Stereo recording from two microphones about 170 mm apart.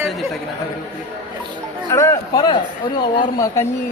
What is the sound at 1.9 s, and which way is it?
Speech, 15° left (ahead or behind).